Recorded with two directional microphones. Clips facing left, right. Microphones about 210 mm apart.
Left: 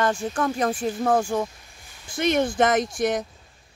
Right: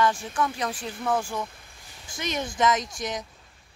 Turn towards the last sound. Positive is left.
turn(degrees=55)  # may be behind; listen again after turning